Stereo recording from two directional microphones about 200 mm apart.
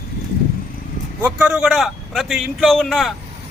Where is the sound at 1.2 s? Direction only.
5° right (ahead or behind).